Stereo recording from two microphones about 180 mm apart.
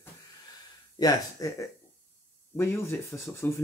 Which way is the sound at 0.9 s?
20° left (ahead or behind).